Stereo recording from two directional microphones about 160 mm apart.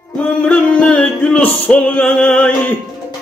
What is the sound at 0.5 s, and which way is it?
Music, 5° left (ahead or behind).